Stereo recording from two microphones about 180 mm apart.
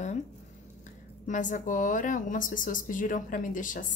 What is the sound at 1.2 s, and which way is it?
A woman's voice, 45° left (ahead or behind).